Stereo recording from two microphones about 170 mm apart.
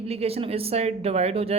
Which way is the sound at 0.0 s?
35° right (ahead or behind).